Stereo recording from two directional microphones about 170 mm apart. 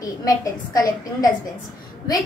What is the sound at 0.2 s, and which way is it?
A woman's voice, 20° left (ahead or behind).